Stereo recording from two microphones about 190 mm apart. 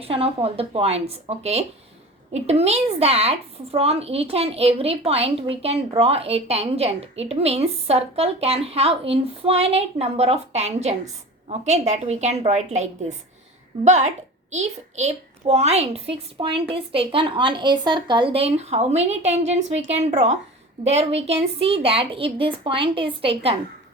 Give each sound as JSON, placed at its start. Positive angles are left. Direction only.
{"t": 0.0, "sound": "a woman's voice", "side_deg": -30}